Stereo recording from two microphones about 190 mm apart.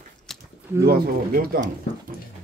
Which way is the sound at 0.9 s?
50° right (ahead or behind).